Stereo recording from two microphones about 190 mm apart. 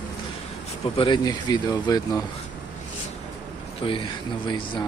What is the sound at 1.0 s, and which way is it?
Speech, 20° left (ahead or behind).